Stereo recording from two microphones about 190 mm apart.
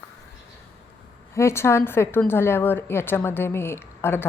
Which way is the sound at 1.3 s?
15° left (ahead or behind).